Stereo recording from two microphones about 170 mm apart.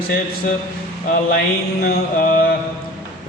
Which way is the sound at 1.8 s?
60° left (ahead or behind).